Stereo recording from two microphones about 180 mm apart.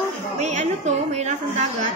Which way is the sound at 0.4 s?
40° right (ahead or behind).